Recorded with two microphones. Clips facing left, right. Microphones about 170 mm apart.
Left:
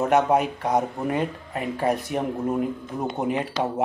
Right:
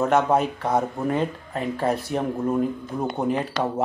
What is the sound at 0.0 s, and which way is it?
Speech, 15° left (ahead or behind).